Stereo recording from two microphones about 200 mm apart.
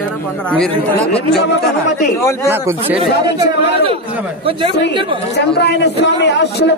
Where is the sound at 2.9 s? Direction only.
30° right (ahead or behind).